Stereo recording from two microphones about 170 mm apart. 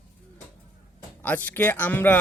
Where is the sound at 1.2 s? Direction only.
10° left (ahead or behind).